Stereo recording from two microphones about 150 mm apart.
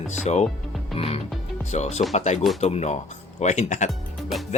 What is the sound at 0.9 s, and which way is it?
Music, 40° left (ahead or behind).